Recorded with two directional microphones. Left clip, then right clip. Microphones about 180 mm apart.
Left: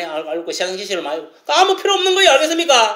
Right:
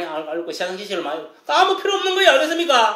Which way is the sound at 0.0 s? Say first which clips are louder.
Left 3 dB; 20° left (ahead or behind).